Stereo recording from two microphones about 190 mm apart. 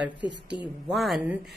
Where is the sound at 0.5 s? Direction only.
25° left (ahead or behind).